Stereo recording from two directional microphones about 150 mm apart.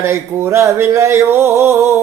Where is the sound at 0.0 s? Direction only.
20° right (ahead or behind).